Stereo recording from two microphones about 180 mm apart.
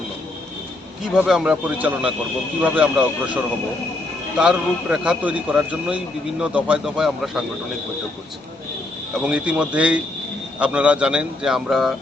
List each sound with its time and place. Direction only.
1.1 s a man's voice: centre (ahead or behind)
4.4 s a man's voice: 5° right (ahead or behind)
9.2 s a man's voice: 5° right (ahead or behind)